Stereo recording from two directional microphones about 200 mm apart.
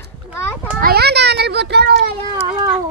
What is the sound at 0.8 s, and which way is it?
A child's voice, 50° right (ahead or behind).